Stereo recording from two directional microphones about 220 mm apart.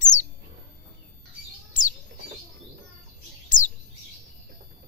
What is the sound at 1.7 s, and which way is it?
Bird, 35° left (ahead or behind).